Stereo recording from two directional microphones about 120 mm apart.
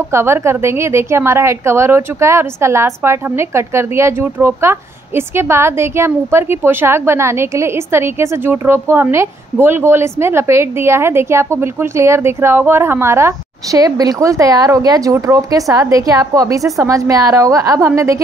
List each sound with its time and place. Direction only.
0.1 s a woman's voice: 20° right (ahead or behind)